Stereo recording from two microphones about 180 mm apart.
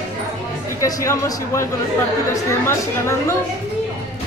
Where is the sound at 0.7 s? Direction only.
20° left (ahead or behind).